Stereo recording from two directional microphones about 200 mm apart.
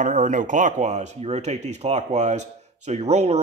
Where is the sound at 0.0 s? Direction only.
40° right (ahead or behind).